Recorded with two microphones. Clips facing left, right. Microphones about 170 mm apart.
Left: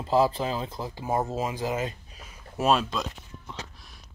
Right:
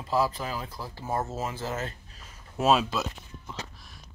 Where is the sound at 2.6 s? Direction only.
5° right (ahead or behind).